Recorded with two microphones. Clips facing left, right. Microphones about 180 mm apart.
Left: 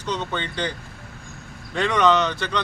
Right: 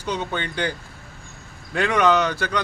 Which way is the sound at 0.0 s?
10° right (ahead or behind).